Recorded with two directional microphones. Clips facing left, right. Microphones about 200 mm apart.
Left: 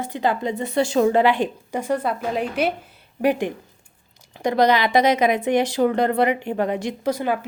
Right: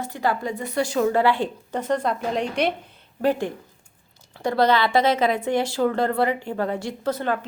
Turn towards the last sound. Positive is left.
turn(degrees=10)  # may be behind; listen again after turning